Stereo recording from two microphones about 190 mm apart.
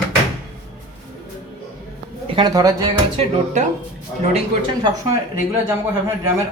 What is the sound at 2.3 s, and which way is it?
Speech, 20° right (ahead or behind).